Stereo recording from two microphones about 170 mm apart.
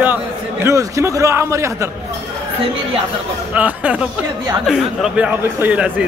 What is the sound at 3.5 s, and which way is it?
A man's voice, 10° right (ahead or behind).